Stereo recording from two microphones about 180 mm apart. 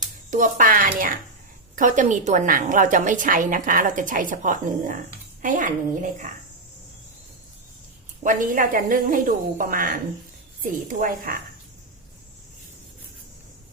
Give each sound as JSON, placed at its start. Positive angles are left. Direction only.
{"t": 0.3, "sound": "a woman's voice", "side_deg": -45}
{"t": 8.2, "sound": "a woman's voice", "side_deg": -45}